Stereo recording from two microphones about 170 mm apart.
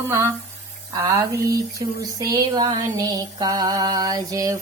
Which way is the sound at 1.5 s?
20° right (ahead or behind).